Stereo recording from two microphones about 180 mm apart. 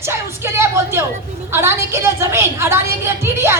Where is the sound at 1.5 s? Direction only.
15° right (ahead or behind).